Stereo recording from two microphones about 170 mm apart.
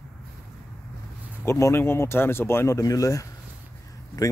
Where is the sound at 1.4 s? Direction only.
15° left (ahead or behind).